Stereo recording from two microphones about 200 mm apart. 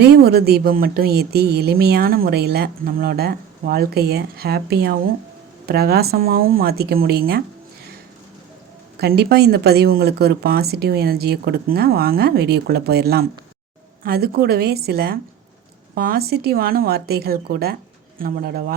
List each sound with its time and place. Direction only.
0.0 s speech: 50° right (ahead or behind)
9.0 s speech: 50° right (ahead or behind)